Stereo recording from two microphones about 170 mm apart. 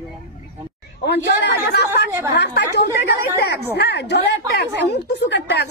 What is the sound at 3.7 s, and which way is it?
A woman's voice, 75° left (ahead or behind).